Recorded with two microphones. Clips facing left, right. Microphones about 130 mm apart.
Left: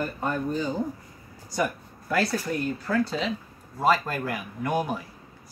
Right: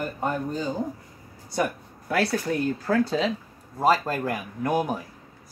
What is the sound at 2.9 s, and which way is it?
Speech, 50° right (ahead or behind).